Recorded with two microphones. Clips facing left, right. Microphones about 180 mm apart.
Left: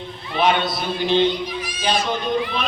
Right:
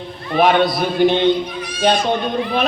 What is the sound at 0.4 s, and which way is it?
Speech, 50° right (ahead or behind).